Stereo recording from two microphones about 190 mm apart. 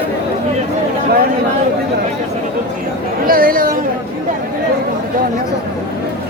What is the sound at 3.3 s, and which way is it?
Chatter, 50° right (ahead or behind).